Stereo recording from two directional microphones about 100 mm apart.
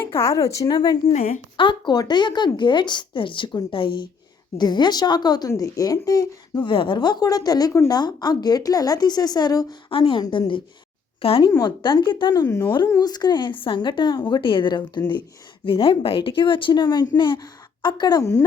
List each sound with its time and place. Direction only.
0.0 s speech: 25° left (ahead or behind)
1.5 s speech: 55° left (ahead or behind)
5.5 s speech: 30° left (ahead or behind)
10.0 s a woman's voice: 50° left (ahead or behind)
18.2 s speech: 30° left (ahead or behind)